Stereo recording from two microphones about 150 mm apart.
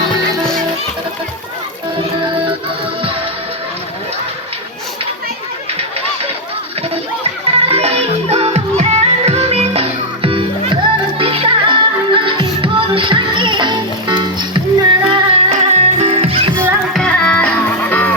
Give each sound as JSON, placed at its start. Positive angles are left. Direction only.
{"t": 7.5, "sound": "music", "side_deg": -40}
{"t": 15.4, "sound": "music", "side_deg": -45}
{"t": 16.9, "sound": "music", "side_deg": 5}